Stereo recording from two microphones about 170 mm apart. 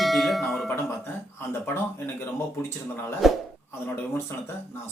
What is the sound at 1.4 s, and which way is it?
Speech, 15° left (ahead or behind).